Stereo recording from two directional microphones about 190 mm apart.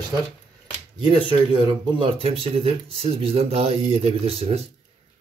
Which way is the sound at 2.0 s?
30° right (ahead or behind).